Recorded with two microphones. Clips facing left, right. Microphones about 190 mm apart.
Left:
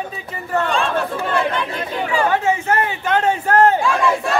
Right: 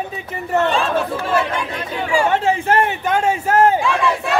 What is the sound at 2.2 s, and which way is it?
Speech, 30° right (ahead or behind).